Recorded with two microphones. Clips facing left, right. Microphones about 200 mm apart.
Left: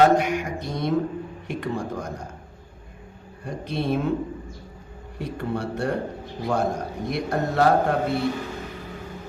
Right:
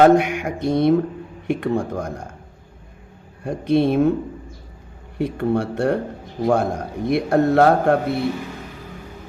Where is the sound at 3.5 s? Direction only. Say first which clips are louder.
Right 8 dB; 55° right (ahead or behind).